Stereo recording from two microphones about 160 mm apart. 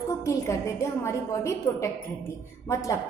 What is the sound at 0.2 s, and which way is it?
A woman's voice, 20° left (ahead or behind).